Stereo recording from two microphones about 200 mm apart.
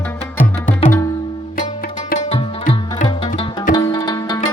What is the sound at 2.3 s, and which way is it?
Music, 40° left (ahead or behind).